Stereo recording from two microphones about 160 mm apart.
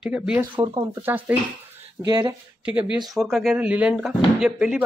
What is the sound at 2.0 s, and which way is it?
Speech, 25° right (ahead or behind).